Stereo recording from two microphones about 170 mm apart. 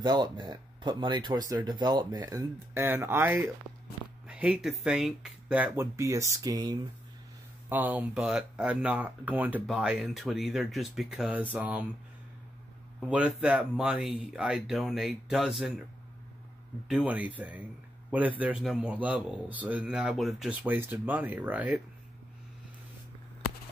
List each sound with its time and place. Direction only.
0.0 s speech: 25° right (ahead or behind)
7.7 s speech: 10° right (ahead or behind)
13.1 s speech: 5° right (ahead or behind)
16.8 s speech: 5° right (ahead or behind)